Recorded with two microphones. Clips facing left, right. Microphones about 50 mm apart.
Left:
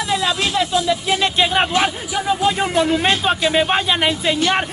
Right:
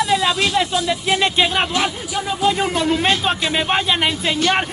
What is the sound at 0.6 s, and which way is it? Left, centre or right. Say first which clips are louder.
Speech: left 1 dB; centre.